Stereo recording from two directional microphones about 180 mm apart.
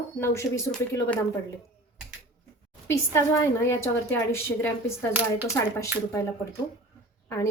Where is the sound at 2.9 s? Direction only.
15° left (ahead or behind).